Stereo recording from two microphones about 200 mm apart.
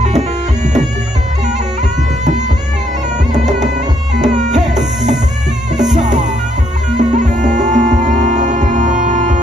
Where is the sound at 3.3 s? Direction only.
35° right (ahead or behind).